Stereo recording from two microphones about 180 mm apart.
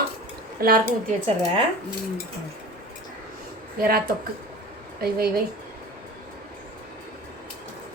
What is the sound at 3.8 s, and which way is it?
Speech, 55° right (ahead or behind).